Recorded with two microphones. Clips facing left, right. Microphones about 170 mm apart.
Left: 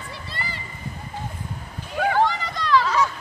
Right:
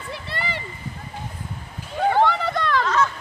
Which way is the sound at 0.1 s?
60° right (ahead or behind).